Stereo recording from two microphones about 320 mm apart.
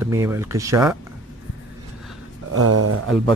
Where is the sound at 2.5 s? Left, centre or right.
Right.